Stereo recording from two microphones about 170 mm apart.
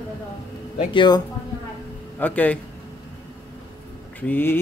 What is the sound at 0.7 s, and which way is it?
Speech, 25° left (ahead or behind).